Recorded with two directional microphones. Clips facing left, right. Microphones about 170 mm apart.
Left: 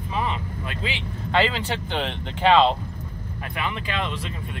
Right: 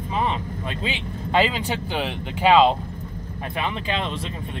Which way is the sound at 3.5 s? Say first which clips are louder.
Right 2 dB; 20° right (ahead or behind).